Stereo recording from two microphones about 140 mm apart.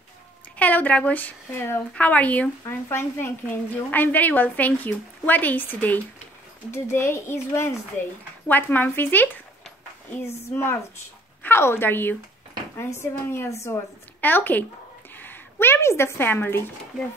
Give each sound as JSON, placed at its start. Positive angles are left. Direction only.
{"t": 0.6, "sound": "a woman's voice", "side_deg": 10}